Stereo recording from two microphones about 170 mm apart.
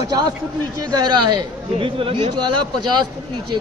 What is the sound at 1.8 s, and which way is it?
Speech, 30° right (ahead or behind).